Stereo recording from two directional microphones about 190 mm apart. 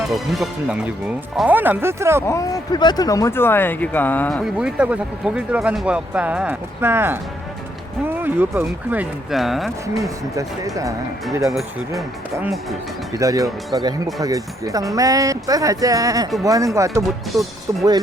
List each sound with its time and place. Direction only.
0.0 s speech: centre (ahead or behind)
2.2 s speech: 15° left (ahead or behind)
4.5 s speech: 5° right (ahead or behind)
9.9 s speech: 15° right (ahead or behind)
11.5 s speech: centre (ahead or behind)
13.1 s speech: 15° right (ahead or behind)
17.3 s speech: centre (ahead or behind)